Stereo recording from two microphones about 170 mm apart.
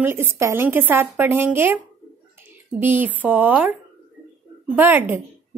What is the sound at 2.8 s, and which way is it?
Speech, 10° right (ahead or behind).